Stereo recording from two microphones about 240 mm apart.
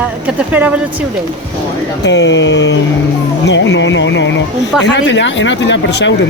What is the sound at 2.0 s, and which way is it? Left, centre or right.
Speech, left.